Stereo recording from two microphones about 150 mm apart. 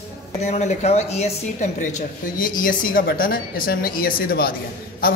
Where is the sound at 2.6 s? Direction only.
65° left (ahead or behind).